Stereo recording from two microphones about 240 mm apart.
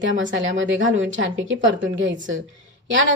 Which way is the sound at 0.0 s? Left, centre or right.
Right.